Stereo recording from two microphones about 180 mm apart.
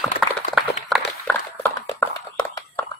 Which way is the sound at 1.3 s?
10° left (ahead or behind).